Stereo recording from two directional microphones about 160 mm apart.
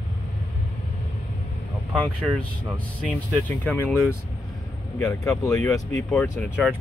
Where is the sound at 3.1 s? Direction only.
10° left (ahead or behind).